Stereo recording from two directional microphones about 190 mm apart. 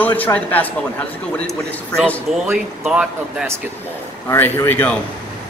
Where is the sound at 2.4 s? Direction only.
5° right (ahead or behind).